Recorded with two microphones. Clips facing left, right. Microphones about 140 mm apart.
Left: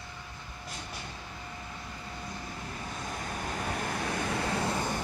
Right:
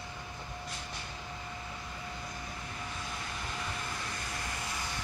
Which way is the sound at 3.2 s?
45° left (ahead or behind).